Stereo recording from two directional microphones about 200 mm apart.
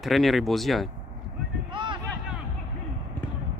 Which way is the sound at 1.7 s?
25° right (ahead or behind).